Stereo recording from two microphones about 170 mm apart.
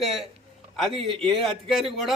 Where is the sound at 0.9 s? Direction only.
30° right (ahead or behind).